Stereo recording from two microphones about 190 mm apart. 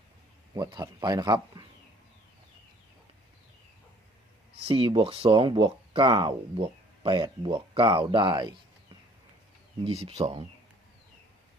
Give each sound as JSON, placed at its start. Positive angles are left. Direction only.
{"t": 0.5, "sound": "speech", "side_deg": -20}
{"t": 4.7, "sound": "speech", "side_deg": -25}
{"t": 9.8, "sound": "speech", "side_deg": -35}